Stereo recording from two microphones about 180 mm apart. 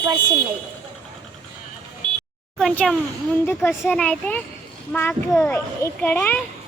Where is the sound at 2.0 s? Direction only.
25° right (ahead or behind).